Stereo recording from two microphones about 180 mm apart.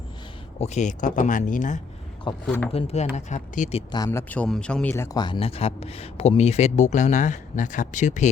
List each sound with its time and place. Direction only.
0.6 s speech: 40° left (ahead or behind)
2.3 s a man's voice: 30° left (ahead or behind)
3.9 s a man's voice: 15° left (ahead or behind); by 8.3 s 40° left (ahead or behind)